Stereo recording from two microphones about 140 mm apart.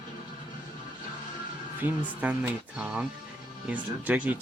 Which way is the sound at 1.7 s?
10° right (ahead or behind).